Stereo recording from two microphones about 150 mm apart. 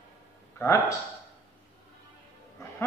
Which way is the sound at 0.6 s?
15° left (ahead or behind).